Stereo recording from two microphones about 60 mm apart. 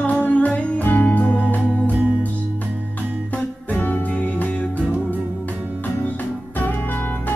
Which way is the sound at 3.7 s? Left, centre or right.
Left.